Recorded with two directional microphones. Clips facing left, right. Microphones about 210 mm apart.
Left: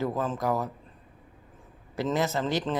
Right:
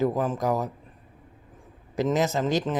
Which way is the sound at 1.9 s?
20° right (ahead or behind).